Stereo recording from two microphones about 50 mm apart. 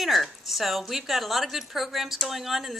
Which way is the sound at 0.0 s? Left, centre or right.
Centre.